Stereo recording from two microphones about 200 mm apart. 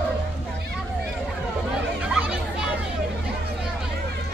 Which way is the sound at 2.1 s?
5° right (ahead or behind).